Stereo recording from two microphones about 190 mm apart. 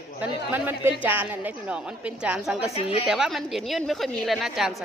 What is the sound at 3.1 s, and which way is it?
A woman's voice, centre (ahead or behind).